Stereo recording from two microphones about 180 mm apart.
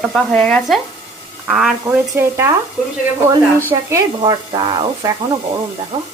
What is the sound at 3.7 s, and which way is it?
A woman's voice, 15° right (ahead or behind).